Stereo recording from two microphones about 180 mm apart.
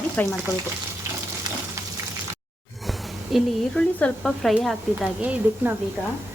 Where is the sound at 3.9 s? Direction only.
5° left (ahead or behind).